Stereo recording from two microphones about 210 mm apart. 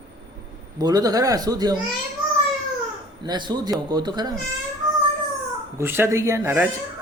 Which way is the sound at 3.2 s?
20° right (ahead or behind).